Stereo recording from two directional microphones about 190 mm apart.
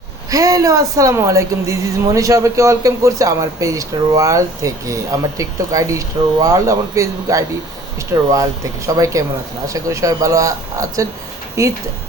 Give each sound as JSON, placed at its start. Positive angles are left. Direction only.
{"t": 0.3, "sound": "speech", "side_deg": -15}